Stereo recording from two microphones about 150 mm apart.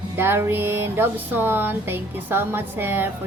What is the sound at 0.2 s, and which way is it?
Music, 15° right (ahead or behind).